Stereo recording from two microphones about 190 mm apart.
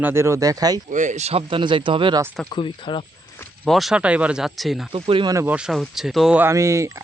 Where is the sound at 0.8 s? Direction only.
40° right (ahead or behind); by 2.2 s 25° right (ahead or behind).